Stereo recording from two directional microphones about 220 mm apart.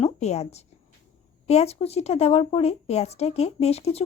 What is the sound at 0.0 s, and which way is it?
A woman's voice, 30° left (ahead or behind).